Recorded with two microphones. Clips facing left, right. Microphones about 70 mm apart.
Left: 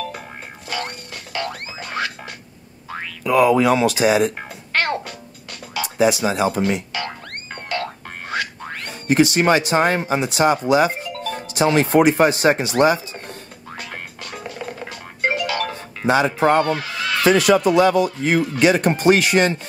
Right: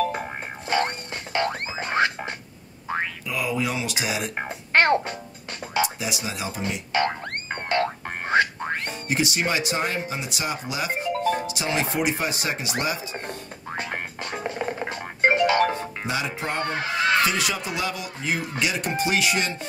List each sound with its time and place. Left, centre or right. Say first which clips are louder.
0.1 s boing: right 4 dB; right
3.3 s speech: left 15 dB; left
4.0 s speech: left 11 dB; left
4.4 s music: right 3 dB; right
5.9 s speech: left 13 dB; left
7.1 s boing: right 3 dB; right
9.0 s speech: left 11 dB; left
11.0 s music: right 4 dB; right
11.5 s speech: left 10 dB; left
13.1 s music: right 1 dB; right
16.1 s speech: left 13 dB; left
16.6 s a sound: left 1 dB; right
17.3 s speech: left 12 dB; left